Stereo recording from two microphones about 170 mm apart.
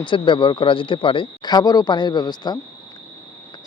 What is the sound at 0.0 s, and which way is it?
Speech, 30° left (ahead or behind).